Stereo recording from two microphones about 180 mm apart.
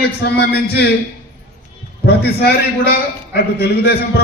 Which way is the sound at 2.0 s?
65° left (ahead or behind).